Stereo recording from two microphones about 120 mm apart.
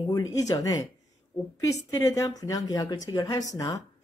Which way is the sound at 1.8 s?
30° left (ahead or behind).